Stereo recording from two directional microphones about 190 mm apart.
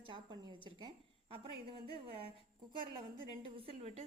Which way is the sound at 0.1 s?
25° right (ahead or behind).